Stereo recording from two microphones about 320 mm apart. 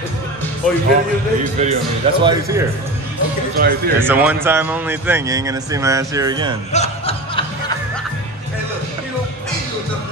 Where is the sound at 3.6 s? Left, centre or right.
Right.